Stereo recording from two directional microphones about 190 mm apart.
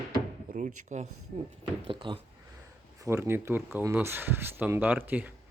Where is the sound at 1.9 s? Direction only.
25° right (ahead or behind).